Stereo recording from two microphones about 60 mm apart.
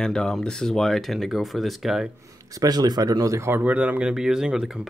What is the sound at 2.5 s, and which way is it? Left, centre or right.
Speech, right.